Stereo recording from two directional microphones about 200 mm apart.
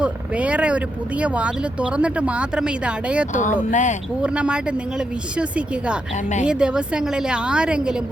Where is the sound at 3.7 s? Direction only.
35° left (ahead or behind).